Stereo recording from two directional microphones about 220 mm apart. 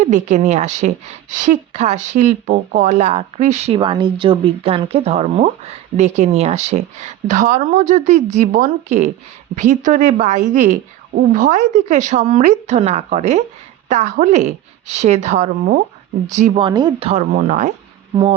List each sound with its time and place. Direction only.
0.0 s a woman's voice: 35° right (ahead or behind)
18.1 s speech: 20° right (ahead or behind)